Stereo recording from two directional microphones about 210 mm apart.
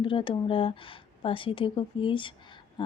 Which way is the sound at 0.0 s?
25° left (ahead or behind).